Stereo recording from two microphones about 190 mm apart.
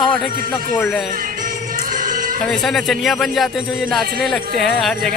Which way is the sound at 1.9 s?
45° right (ahead or behind).